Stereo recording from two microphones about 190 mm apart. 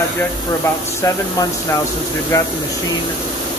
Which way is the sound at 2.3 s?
15° left (ahead or behind).